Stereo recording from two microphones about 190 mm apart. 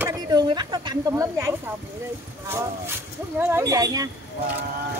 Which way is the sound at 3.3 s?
10° right (ahead or behind).